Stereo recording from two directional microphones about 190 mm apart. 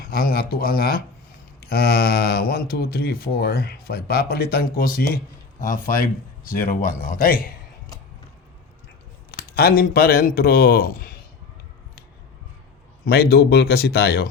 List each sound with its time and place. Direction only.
0.0 s speech: 55° left (ahead or behind)
9.3 s speech: 55° left (ahead or behind)
13.1 s speech: 55° left (ahead or behind)